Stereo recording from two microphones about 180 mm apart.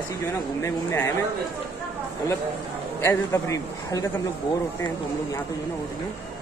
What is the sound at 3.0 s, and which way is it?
A man's voice, 15° left (ahead or behind).